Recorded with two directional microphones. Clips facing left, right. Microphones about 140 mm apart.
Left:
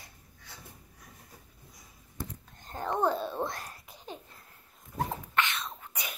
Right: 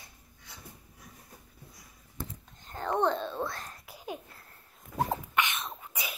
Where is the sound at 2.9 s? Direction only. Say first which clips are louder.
Right 1 dB; 5° left (ahead or behind).